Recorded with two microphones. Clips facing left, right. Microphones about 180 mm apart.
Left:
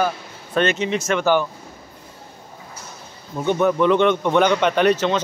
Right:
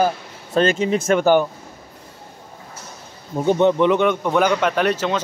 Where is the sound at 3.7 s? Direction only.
20° right (ahead or behind).